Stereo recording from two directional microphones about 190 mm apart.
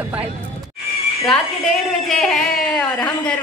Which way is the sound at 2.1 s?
Centre (ahead or behind).